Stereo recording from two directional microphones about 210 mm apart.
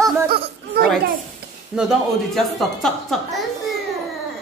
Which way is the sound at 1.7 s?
Centre (ahead or behind).